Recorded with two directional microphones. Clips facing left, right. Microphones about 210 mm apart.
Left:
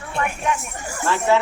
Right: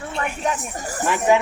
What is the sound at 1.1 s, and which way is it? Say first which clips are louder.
Speech: right 1 dB; 15° right (ahead or behind).